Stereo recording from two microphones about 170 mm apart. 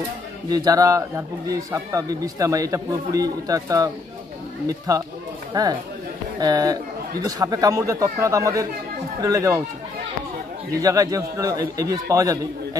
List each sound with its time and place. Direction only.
0.5 s a man's voice: 25° right (ahead or behind)
10.7 s a man's voice: 20° right (ahead or behind)